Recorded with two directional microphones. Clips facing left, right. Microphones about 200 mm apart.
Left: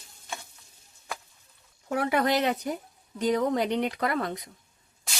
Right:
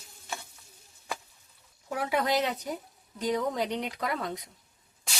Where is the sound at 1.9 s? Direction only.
60° left (ahead or behind).